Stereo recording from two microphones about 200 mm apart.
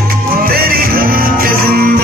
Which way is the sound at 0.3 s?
45° right (ahead or behind).